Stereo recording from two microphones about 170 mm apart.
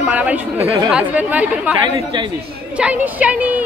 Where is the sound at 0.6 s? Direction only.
35° right (ahead or behind).